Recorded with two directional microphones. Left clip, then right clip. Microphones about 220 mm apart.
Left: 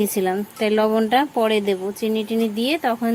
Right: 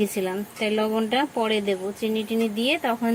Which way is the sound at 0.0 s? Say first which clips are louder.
Left 5 dB; 30° left (ahead or behind).